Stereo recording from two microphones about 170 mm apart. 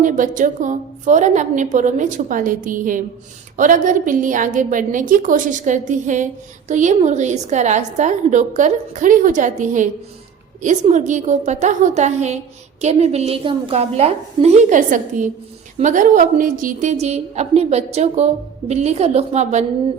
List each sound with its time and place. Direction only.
0.0 s a woman's voice: 50° right (ahead or behind)